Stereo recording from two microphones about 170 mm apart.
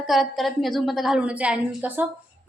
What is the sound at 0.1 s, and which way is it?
A woman's voice, centre (ahead or behind).